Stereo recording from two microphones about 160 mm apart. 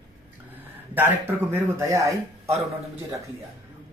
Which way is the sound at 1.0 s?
15° right (ahead or behind).